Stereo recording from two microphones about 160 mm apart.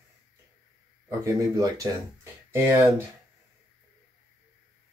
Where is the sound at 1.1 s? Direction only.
20° right (ahead or behind).